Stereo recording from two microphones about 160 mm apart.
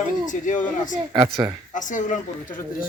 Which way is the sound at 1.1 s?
30° right (ahead or behind).